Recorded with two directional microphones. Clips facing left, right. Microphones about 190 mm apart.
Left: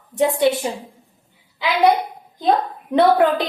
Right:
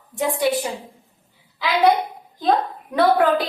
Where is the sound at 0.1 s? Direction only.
25° left (ahead or behind).